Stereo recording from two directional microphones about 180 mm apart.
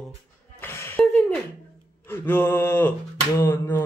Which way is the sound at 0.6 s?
10° left (ahead or behind).